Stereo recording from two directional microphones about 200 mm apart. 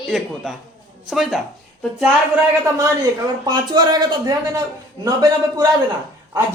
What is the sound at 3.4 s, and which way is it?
A man's voice, 20° right (ahead or behind).